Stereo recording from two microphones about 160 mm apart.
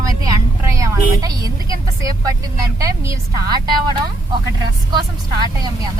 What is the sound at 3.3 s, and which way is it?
Speech, 25° right (ahead or behind).